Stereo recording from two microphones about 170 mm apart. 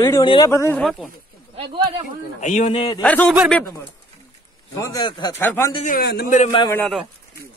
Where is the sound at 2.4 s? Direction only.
45° left (ahead or behind).